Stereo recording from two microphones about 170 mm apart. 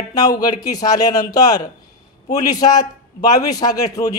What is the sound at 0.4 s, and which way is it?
Speech, 20° left (ahead or behind).